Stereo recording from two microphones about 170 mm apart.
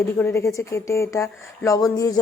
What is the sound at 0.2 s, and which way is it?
Speech, 15° left (ahead or behind).